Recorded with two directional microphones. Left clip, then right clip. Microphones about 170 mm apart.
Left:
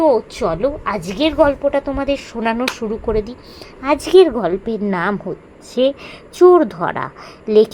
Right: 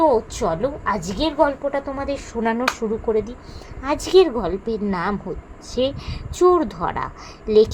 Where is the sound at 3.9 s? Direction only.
50° left (ahead or behind).